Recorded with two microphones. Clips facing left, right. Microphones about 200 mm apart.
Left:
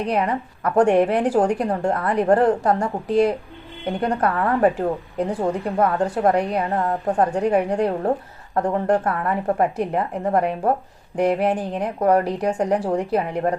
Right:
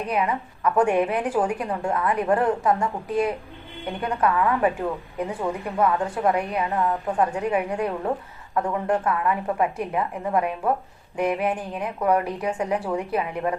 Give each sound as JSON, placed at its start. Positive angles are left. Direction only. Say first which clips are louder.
{"t": 0.1, "sound": "a woman's voice", "louder": "left 3 dB", "side_deg": 40}